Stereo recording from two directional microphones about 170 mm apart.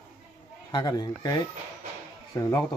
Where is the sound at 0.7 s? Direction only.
25° left (ahead or behind).